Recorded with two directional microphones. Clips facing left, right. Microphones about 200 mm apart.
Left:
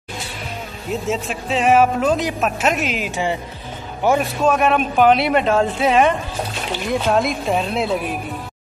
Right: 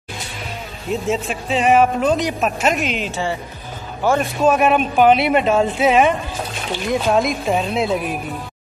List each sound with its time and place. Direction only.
1.0 s a man's voice: centre (ahead or behind)
3.1 s a man's voice: 15° left (ahead or behind)
4.5 s a man's voice: 5° right (ahead or behind)